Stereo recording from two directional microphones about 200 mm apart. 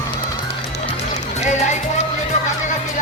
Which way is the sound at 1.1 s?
35° left (ahead or behind).